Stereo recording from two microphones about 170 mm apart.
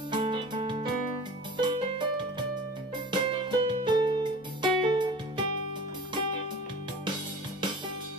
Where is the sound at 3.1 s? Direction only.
30° right (ahead or behind).